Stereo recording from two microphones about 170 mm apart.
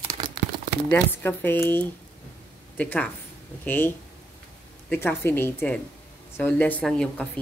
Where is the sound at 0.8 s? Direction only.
10° left (ahead or behind).